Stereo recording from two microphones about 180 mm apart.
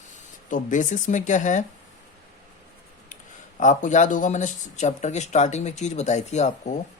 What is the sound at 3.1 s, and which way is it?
Speech, 45° left (ahead or behind).